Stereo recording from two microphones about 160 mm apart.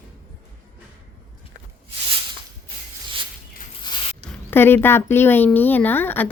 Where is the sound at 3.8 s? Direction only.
30° left (ahead or behind).